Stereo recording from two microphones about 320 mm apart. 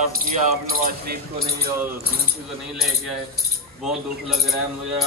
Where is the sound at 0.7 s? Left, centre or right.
Right.